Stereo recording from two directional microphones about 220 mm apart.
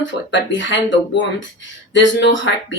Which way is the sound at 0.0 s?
55° left (ahead or behind).